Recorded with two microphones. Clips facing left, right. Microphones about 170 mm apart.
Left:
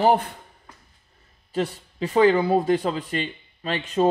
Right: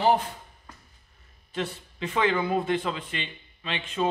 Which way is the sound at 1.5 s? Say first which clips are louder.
Left 6 dB; 35° left (ahead or behind).